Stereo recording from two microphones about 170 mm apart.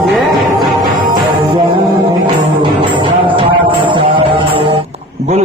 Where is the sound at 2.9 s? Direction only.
30° right (ahead or behind).